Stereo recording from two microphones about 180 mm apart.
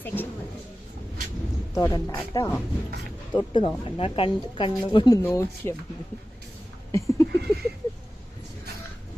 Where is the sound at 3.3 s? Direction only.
25° left (ahead or behind).